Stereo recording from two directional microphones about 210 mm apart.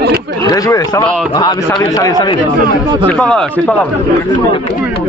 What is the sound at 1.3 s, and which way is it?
A man's voice, 20° left (ahead or behind).